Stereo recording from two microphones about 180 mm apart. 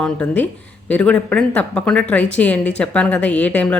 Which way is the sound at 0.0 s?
5° left (ahead or behind).